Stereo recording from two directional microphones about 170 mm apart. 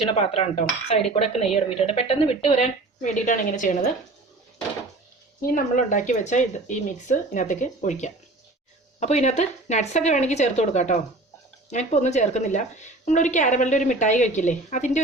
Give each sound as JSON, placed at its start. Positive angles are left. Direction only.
{"t": 0.3, "sound": "a woman's voice", "side_deg": 35}
{"t": 5.4, "sound": "speech", "side_deg": 55}